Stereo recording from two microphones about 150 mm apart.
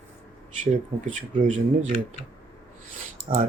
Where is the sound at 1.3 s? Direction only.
55° right (ahead or behind).